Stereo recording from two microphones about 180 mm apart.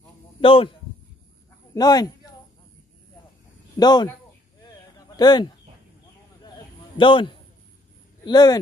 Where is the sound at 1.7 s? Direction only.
20° left (ahead or behind).